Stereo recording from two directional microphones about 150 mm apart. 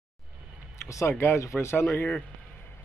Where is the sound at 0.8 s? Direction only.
20° left (ahead or behind).